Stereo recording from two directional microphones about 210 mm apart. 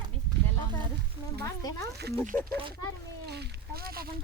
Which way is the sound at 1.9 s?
50° right (ahead or behind).